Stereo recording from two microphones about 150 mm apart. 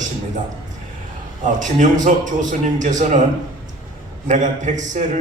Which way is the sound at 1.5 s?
55° right (ahead or behind).